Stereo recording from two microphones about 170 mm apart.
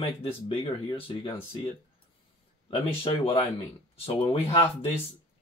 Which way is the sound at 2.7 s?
35° left (ahead or behind).